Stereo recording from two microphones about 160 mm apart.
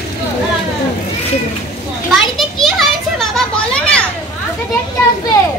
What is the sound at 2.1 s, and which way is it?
Children playing, centre (ahead or behind).